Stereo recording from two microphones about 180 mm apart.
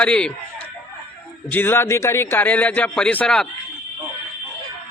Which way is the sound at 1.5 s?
10° left (ahead or behind).